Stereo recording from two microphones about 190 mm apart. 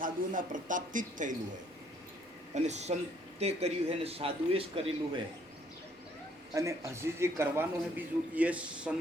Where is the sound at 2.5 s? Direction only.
35° right (ahead or behind).